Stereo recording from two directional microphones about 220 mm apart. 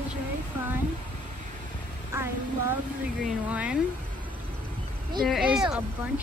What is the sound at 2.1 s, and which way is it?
Speech, 10° right (ahead or behind).